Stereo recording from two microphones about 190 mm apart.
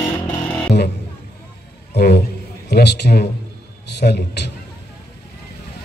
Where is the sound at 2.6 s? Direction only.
60° left (ahead or behind).